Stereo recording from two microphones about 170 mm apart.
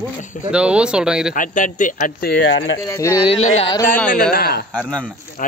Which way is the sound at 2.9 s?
20° left (ahead or behind).